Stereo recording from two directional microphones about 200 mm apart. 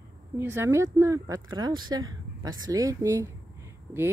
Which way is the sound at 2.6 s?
15° right (ahead or behind).